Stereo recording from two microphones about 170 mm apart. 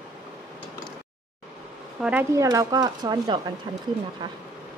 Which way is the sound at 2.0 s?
10° right (ahead or behind).